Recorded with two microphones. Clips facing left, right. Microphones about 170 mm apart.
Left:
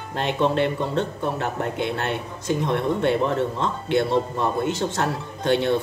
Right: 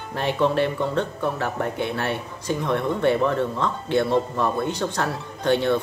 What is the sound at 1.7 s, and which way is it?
Speech, 60° left (ahead or behind).